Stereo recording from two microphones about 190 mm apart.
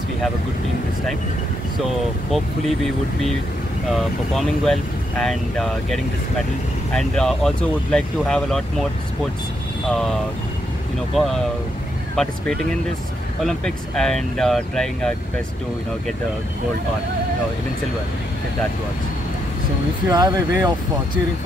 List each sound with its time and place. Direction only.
2.3 s speech: centre (ahead or behind)
9.8 s speech: centre (ahead or behind)
11.1 s speech: centre (ahead or behind)
13.4 s speech: 5° left (ahead or behind)
20.1 s speech: 20° right (ahead or behind)